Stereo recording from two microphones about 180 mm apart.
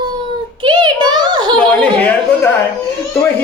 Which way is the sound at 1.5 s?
5° left (ahead or behind).